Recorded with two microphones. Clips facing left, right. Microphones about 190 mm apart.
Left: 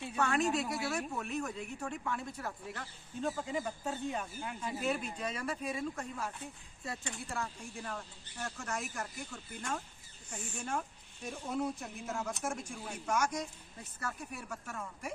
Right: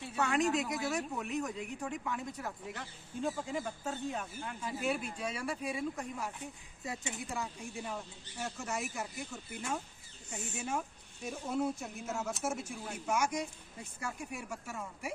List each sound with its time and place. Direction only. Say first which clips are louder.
0.2 s speech: right 1 dB; 15° right (ahead or behind)
3.2 s speech: left 1 dB; centre (ahead or behind)